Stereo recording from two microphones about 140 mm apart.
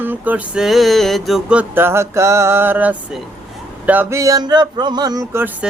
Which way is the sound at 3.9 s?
15° right (ahead or behind).